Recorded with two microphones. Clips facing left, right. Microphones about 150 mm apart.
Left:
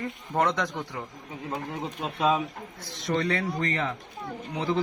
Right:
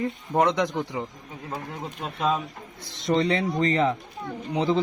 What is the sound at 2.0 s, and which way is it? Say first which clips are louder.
Speech: left 1 dB; 5° left (ahead or behind).